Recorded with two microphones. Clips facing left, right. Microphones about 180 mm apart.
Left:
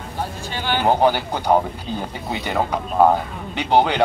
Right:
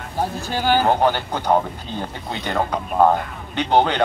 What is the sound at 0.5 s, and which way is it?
Speech, 40° right (ahead or behind).